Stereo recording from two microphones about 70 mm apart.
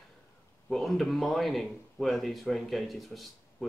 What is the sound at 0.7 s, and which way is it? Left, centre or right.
Speech, centre.